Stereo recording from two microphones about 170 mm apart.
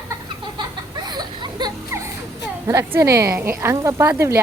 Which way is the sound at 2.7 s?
15° right (ahead or behind).